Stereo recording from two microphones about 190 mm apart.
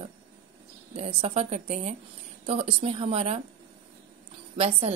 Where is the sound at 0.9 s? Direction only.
30° right (ahead or behind).